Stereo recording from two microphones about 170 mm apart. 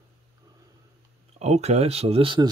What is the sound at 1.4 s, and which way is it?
Speech, 40° right (ahead or behind).